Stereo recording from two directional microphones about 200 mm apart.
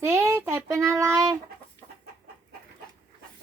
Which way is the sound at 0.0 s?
15° right (ahead or behind).